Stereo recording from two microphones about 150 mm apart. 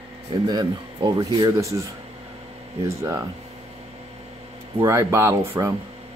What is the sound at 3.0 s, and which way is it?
Speech, 20° right (ahead or behind).